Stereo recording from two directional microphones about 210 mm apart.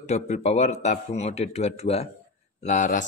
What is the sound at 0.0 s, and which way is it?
A man's voice, 30° left (ahead or behind).